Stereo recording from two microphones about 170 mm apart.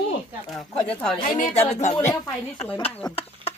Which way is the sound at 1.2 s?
45° left (ahead or behind).